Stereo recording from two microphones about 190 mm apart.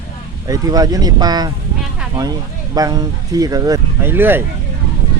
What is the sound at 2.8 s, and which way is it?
Speech, 20° right (ahead or behind).